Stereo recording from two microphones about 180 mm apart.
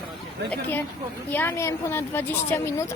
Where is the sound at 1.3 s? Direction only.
10° left (ahead or behind).